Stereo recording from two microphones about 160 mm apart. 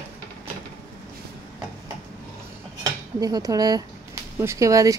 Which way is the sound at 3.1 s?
25° right (ahead or behind).